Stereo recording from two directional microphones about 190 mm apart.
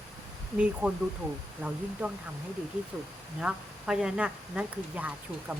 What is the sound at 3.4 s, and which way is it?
Speech, 5° right (ahead or behind).